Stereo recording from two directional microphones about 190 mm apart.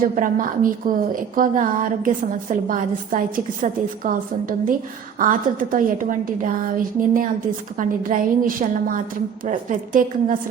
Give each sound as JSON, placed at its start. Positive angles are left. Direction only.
{"t": 0.0, "sound": "a woman's voice", "side_deg": -45}